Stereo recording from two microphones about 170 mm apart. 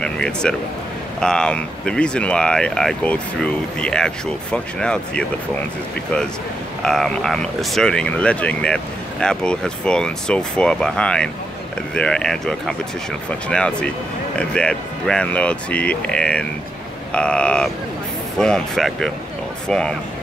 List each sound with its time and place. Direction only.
0.0 s speech: 5° left (ahead or behind)
6.8 s speech: 5° left (ahead or behind)